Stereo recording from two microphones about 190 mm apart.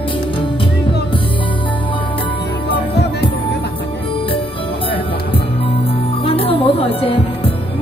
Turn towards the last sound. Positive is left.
turn(degrees=30)  # may be behind; listen again after turning